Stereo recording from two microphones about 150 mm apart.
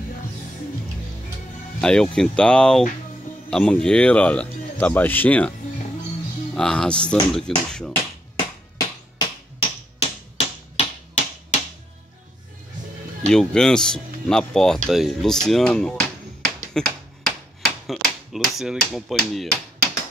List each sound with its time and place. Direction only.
1.8 s speech: 5° left (ahead or behind)
6.5 s speech: 5° left (ahead or behind)
7.9 s a sound: 30° left (ahead or behind)
9.9 s finger snapping: 40° left (ahead or behind)
13.3 s speech: 5° left (ahead or behind)
16.7 s rub: centre (ahead or behind)
18.9 s speech: centre (ahead or behind)